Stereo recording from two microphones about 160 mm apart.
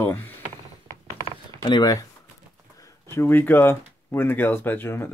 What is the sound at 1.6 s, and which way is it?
Speech, 25° left (ahead or behind).